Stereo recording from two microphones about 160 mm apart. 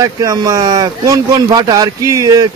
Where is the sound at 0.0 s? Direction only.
20° right (ahead or behind).